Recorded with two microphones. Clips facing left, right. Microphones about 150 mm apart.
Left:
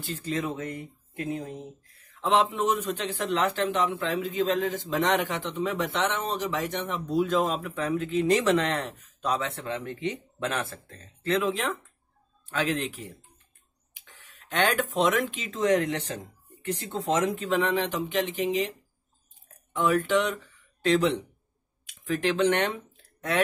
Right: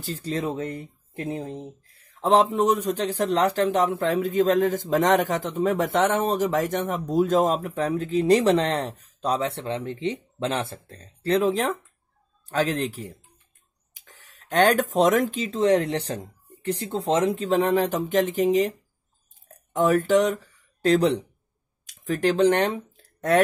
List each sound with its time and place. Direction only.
0.0 s speech: 35° right (ahead or behind)
23.3 s speech: 45° right (ahead or behind)